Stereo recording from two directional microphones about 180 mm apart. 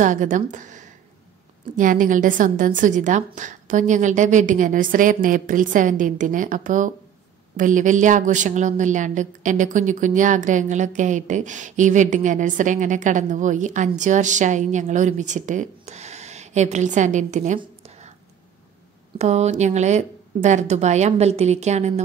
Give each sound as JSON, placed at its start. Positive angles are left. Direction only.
{"t": 0.0, "sound": "a woman's voice", "side_deg": -45}
{"t": 17.6, "sound": "a sound", "side_deg": -35}
{"t": 19.1, "sound": "a woman's voice", "side_deg": -40}